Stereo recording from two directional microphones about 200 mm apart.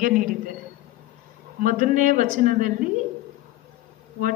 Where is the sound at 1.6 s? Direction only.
40° right (ahead or behind).